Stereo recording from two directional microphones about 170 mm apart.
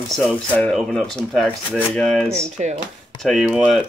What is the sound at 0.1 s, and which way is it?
Speech, centre (ahead or behind).